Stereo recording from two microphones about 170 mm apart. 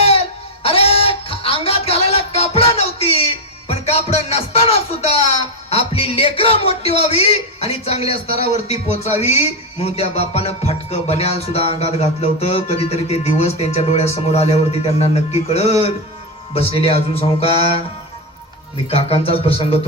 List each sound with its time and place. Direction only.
0.0 s a sound: 35° left (ahead or behind)
3.7 s music: 35° left (ahead or behind)
5.7 s a man's voice: 35° left (ahead or behind)
18.9 s a man's voice: 35° left (ahead or behind)